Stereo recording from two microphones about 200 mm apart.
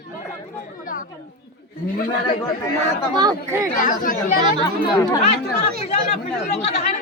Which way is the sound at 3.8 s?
40° left (ahead or behind).